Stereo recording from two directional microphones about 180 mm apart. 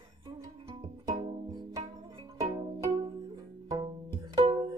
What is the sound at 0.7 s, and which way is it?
Music, 25° right (ahead or behind).